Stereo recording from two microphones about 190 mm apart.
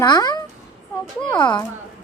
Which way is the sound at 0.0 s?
20° left (ahead or behind).